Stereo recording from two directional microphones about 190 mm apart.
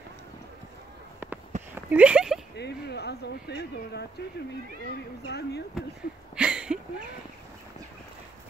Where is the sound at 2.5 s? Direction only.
60° left (ahead or behind).